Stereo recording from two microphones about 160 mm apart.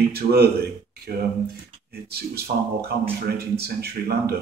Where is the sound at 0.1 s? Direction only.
80° right.